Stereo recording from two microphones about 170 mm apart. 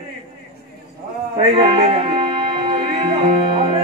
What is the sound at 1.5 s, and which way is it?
Music, 30° right (ahead or behind).